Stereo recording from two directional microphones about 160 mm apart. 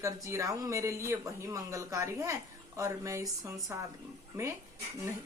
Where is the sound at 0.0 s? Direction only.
20° right (ahead or behind).